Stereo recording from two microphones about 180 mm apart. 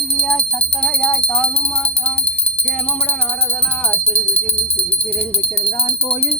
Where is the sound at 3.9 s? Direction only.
10° left (ahead or behind).